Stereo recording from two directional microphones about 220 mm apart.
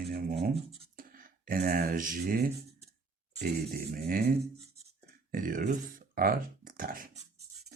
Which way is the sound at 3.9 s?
45° right (ahead or behind).